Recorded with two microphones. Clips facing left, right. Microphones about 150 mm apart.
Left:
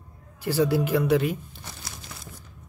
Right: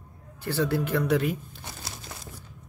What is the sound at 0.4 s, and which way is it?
Speech, 10° left (ahead or behind).